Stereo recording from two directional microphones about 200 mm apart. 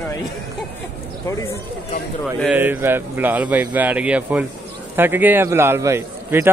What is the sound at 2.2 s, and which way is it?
A man's voice, 10° right (ahead or behind).